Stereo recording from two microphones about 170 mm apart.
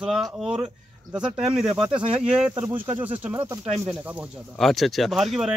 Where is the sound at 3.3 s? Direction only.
35° right (ahead or behind).